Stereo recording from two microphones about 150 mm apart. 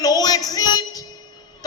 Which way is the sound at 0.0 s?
25° left (ahead or behind).